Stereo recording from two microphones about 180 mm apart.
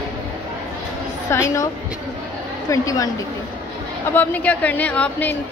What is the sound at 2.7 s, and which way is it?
A woman's voice, 20° left (ahead or behind).